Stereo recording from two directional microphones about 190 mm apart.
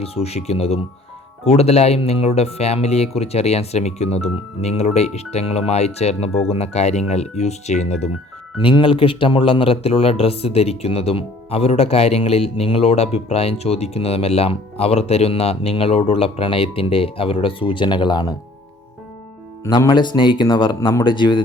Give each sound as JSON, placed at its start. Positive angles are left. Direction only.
{"t": 0.0, "sound": "speech", "side_deg": 30}
{"t": 19.6, "sound": "speech", "side_deg": 20}